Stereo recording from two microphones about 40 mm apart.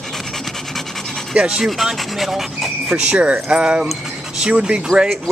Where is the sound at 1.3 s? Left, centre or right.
Right.